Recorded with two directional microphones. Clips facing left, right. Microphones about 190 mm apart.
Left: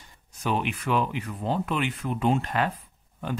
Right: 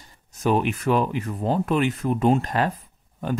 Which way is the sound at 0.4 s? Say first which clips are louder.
Right 6 dB; 45° right (ahead or behind).